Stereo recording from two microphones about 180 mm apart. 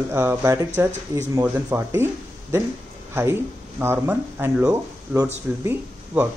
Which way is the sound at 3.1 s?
15° right (ahead or behind).